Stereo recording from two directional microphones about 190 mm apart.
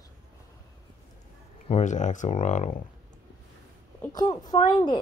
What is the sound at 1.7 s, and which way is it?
Speech, 40° left (ahead or behind).